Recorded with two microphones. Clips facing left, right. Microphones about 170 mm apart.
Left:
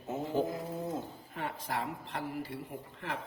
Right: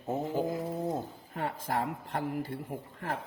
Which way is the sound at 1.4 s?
45° right (ahead or behind).